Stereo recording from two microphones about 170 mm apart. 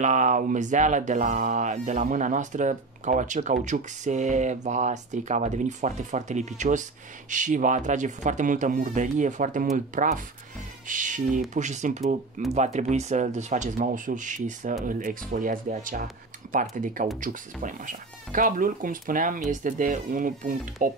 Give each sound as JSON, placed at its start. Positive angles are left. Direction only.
{"t": 0.0, "sound": "speech", "side_deg": -45}